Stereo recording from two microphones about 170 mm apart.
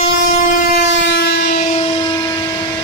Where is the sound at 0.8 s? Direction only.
90° left.